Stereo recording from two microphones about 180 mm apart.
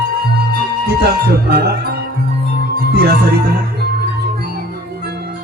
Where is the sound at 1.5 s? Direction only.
60° right (ahead or behind).